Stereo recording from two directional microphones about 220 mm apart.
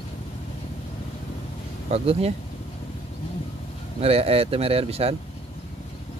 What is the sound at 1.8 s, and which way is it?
Speech, 30° right (ahead or behind).